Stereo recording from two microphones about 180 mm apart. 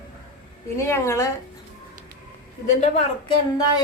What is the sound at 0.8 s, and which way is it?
Speech, 15° left (ahead or behind).